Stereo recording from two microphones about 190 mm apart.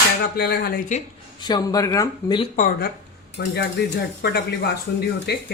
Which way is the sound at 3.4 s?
60° left (ahead or behind).